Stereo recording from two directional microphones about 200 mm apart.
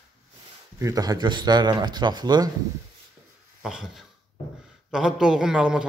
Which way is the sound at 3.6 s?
Centre (ahead or behind).